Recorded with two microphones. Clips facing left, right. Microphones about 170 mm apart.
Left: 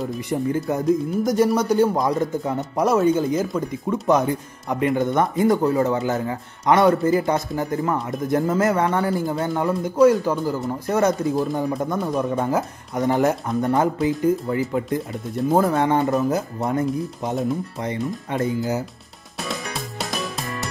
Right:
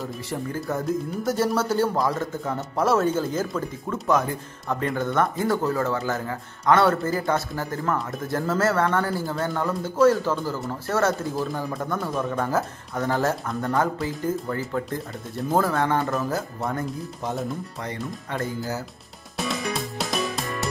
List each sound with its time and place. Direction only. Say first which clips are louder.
0.3 s speech: left 6 dB; 20° left (ahead or behind)
17.8 s speech: left 7 dB; 20° left (ahead or behind)
19.4 s music: right 2 dB; centre (ahead or behind)